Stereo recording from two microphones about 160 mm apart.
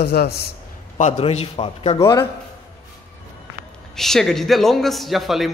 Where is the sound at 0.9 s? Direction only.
45° left (ahead or behind).